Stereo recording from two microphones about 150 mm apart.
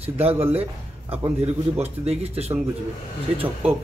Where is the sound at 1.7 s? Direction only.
45° right (ahead or behind).